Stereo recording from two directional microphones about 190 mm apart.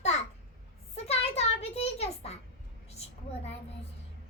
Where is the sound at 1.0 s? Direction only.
35° left (ahead or behind).